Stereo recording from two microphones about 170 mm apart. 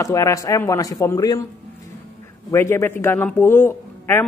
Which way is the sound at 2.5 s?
15° left (ahead or behind).